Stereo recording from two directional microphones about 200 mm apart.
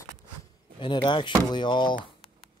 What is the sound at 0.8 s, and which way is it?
Speech, 25° left (ahead or behind).